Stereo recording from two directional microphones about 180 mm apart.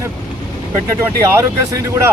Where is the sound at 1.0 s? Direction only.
15° right (ahead or behind).